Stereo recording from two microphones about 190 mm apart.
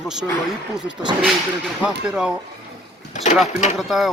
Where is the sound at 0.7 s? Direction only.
25° right (ahead or behind).